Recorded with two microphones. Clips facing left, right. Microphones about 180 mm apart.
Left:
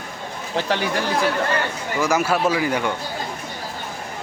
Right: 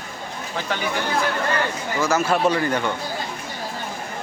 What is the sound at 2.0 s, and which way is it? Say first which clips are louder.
Speech: even; 15° left (ahead or behind).